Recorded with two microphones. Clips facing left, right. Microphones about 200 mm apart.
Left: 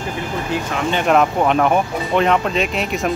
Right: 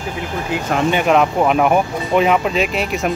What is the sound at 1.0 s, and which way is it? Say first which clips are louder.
Speech: left 2 dB; centre (ahead or behind).